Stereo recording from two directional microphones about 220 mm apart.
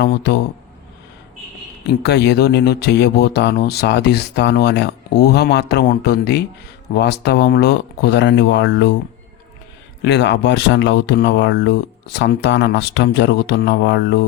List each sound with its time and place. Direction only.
0.0 s speech: 50° left (ahead or behind)
1.9 s speech: 50° left (ahead or behind)
10.0 s speech: 55° left (ahead or behind)